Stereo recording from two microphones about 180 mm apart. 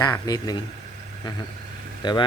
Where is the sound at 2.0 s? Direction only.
25° left (ahead or behind).